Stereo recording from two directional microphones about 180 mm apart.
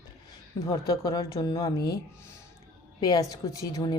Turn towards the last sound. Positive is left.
turn(degrees=20)  # may be behind; listen again after turning